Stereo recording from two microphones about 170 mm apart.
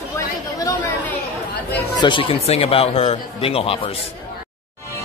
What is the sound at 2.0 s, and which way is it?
Speech, 30° left (ahead or behind).